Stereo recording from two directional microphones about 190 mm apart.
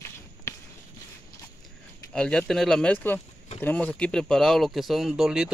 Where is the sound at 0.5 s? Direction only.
15° left (ahead or behind).